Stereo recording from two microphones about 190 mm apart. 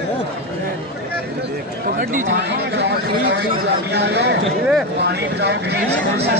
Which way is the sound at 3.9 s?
60° right (ahead or behind).